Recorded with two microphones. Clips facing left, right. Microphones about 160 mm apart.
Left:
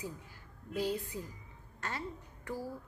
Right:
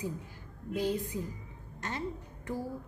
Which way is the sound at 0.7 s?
20° right (ahead or behind).